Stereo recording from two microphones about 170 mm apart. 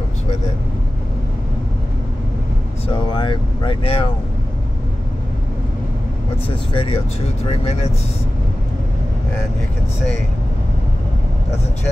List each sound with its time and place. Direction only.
2.9 s speech: 30° left (ahead or behind)
6.4 s speech: 30° left (ahead or behind)